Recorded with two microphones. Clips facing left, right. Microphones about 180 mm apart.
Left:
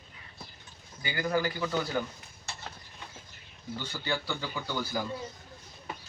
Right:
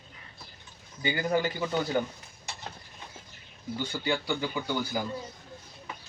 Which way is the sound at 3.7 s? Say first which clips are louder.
Right 4 dB; 15° right (ahead or behind).